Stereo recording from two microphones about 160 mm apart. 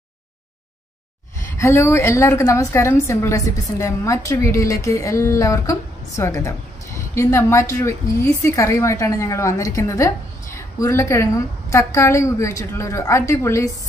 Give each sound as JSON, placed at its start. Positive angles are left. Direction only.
{"t": 1.6, "sound": "a woman's voice", "side_deg": 15}